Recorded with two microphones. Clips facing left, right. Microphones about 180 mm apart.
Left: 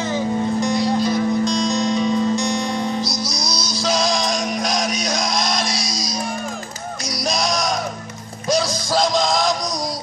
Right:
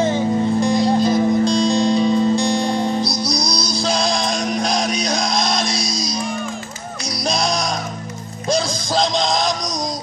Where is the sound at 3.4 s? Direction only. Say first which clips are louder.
Right 2 dB; centre (ahead or behind).